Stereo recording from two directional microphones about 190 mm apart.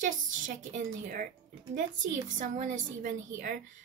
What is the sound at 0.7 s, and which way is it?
A woman's voice, 45° right (ahead or behind).